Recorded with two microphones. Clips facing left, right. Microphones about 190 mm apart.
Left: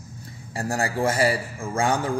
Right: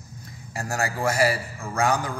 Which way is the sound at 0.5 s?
30° left (ahead or behind).